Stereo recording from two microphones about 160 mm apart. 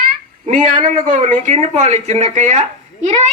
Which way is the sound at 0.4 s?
55° right (ahead or behind).